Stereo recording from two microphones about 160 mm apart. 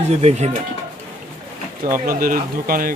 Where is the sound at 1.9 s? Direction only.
60° right (ahead or behind).